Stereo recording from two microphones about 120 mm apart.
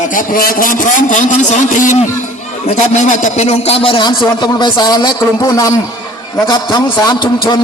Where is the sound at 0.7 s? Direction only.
90° left.